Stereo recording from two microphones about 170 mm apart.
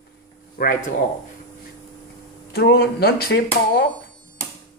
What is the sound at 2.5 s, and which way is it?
Speech, 70° left (ahead or behind).